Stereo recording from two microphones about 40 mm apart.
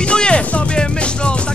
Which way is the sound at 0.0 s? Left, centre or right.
Left.